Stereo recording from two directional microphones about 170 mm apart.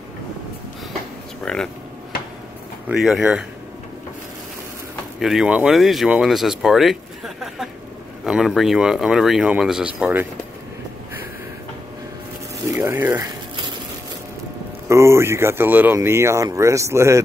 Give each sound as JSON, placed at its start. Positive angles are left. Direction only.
{"t": 1.4, "sound": "speech", "side_deg": 5}
{"t": 2.9, "sound": "speech", "side_deg": -5}
{"t": 5.2, "sound": "speech", "side_deg": -5}
{"t": 12.7, "sound": "speech", "side_deg": -15}
{"t": 14.9, "sound": "speech", "side_deg": -15}